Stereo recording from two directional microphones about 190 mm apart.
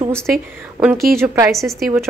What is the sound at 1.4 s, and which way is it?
Speech, centre (ahead or behind).